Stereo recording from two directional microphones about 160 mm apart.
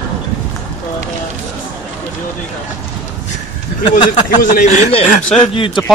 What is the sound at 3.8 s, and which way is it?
Speech, 30° left (ahead or behind).